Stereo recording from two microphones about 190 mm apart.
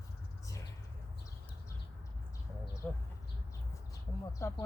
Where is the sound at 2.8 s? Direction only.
10° left (ahead or behind).